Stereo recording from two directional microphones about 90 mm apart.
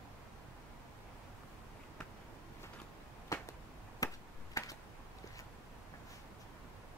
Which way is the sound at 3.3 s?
40° left (ahead or behind).